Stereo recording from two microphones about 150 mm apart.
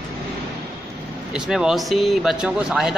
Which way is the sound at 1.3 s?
5° right (ahead or behind).